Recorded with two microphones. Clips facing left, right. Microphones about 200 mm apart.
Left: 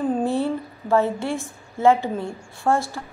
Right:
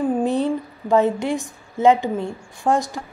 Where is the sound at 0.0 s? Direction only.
15° right (ahead or behind).